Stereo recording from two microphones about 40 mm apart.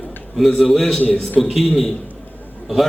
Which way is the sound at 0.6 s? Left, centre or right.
Centre.